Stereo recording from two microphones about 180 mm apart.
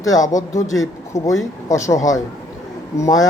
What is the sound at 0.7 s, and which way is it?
A man's voice, 15° left (ahead or behind).